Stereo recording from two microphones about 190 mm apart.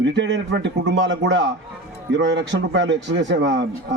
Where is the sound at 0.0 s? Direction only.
70° right (ahead or behind).